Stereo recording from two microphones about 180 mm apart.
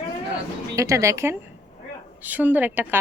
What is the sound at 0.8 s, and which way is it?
A woman's voice, 15° right (ahead or behind).